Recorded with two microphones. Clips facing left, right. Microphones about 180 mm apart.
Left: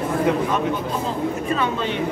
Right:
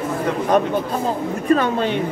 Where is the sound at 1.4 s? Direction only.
45° right (ahead or behind).